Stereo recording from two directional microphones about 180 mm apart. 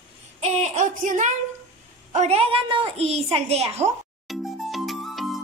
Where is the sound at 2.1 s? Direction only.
35° right (ahead or behind).